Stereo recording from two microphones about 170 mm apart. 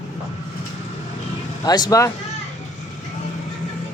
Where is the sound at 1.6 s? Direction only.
25° left (ahead or behind).